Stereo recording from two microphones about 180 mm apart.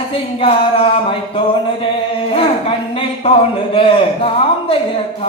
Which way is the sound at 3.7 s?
30° left (ahead or behind).